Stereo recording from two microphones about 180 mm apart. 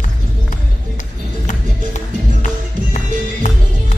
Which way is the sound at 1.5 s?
45° left (ahead or behind).